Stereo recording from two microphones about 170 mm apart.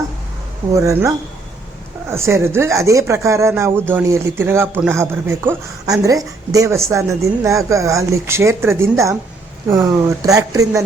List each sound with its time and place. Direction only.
0.7 s speech: 20° right (ahead or behind)